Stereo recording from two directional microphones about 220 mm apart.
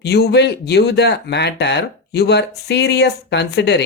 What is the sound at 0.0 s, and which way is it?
Speech, 50° left (ahead or behind).